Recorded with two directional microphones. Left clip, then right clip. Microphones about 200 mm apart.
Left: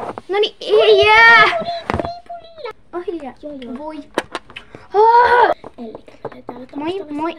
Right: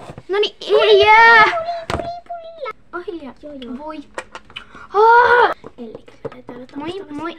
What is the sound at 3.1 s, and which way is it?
Speech, 5° right (ahead or behind).